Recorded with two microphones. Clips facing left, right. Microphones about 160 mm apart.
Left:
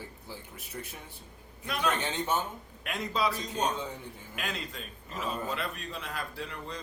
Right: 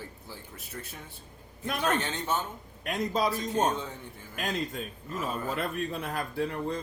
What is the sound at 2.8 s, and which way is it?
A man's voice, 40° right (ahead or behind).